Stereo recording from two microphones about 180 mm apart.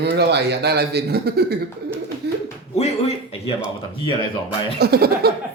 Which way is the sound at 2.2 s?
70° right (ahead or behind).